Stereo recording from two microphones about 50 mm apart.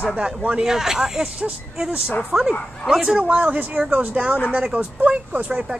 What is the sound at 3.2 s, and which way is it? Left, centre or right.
Speech, right.